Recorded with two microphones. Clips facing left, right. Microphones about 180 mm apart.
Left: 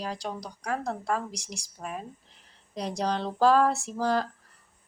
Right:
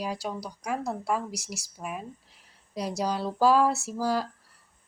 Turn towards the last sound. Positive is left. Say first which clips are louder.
# left 1 dB
turn(degrees=-5)  # may be behind; listen again after turning